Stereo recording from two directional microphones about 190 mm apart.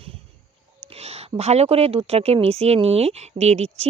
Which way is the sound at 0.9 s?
35° right (ahead or behind).